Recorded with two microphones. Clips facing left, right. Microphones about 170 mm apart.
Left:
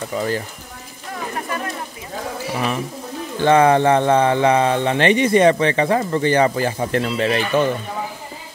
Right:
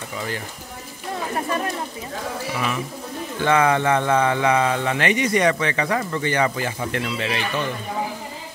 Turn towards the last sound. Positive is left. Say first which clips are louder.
# left 7 dB
turn(degrees=45)  # may be behind; listen again after turning